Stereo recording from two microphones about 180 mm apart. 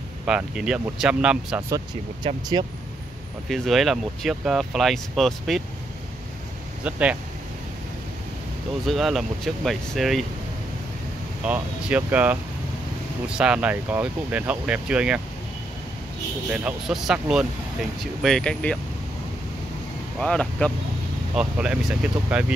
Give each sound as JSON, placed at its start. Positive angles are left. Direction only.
{"t": 0.3, "sound": "speech", "side_deg": -5}
{"t": 2.5, "sound": "speech", "side_deg": -25}
{"t": 3.4, "sound": "speech", "side_deg": 0}
{"t": 6.8, "sound": "speech", "side_deg": -5}
{"t": 8.8, "sound": "speech", "side_deg": 0}
{"t": 11.4, "sound": "speech", "side_deg": -10}
{"t": 13.4, "sound": "speech", "side_deg": -5}
{"t": 16.4, "sound": "speech", "side_deg": -5}
{"t": 20.2, "sound": "speech", "side_deg": 5}
{"t": 21.4, "sound": "speech", "side_deg": -5}